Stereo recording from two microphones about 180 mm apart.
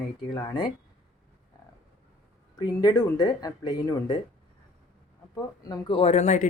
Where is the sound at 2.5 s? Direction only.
20° left (ahead or behind).